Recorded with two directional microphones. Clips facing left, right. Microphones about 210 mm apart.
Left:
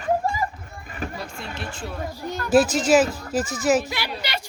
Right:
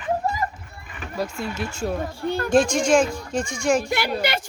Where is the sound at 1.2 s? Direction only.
45° right (ahead or behind).